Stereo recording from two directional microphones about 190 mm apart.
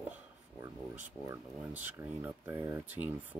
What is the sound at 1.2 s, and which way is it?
Speech, 15° right (ahead or behind).